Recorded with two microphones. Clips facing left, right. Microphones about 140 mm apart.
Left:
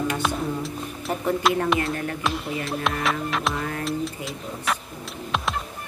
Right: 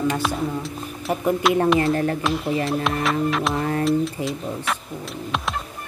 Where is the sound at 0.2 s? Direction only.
Centre (ahead or behind).